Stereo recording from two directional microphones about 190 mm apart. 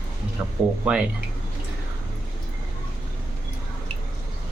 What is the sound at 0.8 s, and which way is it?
Speech, 5° right (ahead or behind).